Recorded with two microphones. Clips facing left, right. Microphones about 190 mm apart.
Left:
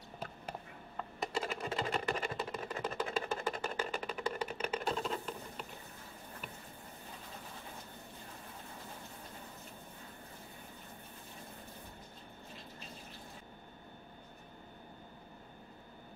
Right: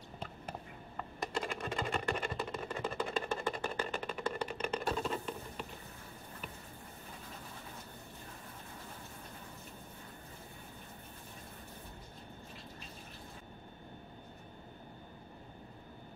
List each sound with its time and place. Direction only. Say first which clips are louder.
0.9 s sewing machine: left 1 dB; 5° left (ahead or behind)